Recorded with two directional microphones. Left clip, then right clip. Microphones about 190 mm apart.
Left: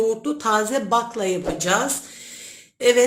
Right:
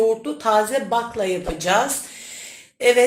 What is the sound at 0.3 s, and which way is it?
Speech, 60° left (ahead or behind).